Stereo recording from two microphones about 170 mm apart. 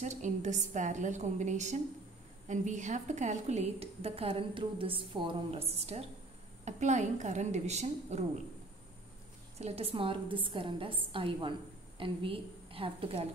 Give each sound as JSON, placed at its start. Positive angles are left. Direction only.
{"t": 0.0, "sound": "a woman's voice", "side_deg": -45}
{"t": 9.6, "sound": "a woman's voice", "side_deg": -35}